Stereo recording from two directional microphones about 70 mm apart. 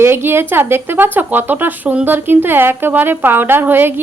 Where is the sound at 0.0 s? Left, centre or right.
Right.